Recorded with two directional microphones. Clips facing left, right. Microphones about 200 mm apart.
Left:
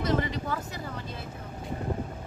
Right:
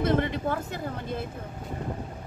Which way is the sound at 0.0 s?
55° right (ahead or behind).